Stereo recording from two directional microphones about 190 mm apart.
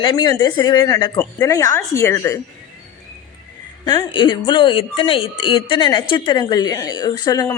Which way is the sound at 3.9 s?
25° left (ahead or behind).